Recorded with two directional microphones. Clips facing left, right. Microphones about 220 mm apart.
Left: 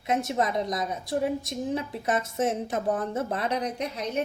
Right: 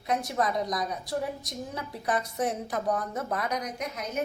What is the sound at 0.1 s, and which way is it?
A woman's voice, 25° left (ahead or behind).